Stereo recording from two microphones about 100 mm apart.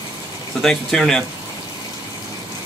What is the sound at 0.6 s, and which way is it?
Speech, 5° left (ahead or behind).